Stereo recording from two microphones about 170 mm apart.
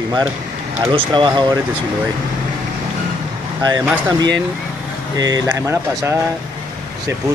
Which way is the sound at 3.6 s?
20° right (ahead or behind).